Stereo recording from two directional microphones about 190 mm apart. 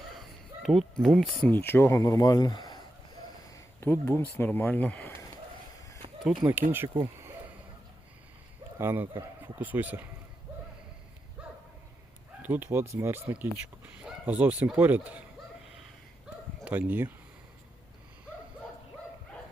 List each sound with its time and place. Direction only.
0.1 s speech: centre (ahead or behind)
6.0 s a sound: 30° right (ahead or behind)
6.4 s speech: 10° right (ahead or behind)
8.8 s speech: 10° right (ahead or behind)
11.4 s a sound: 5° right (ahead or behind)
12.4 s bow-wow: 10° right (ahead or behind)
12.7 s speech: 15° right (ahead or behind)
16.6 s speech: 5° right (ahead or behind)